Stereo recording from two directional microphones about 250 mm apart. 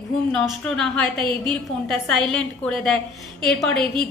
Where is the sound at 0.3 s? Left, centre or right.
Centre.